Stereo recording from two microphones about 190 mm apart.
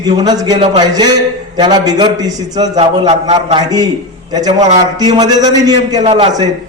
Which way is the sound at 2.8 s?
30° right (ahead or behind).